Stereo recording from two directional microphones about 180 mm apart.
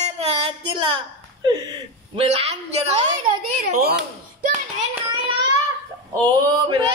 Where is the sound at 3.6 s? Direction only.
60° right (ahead or behind).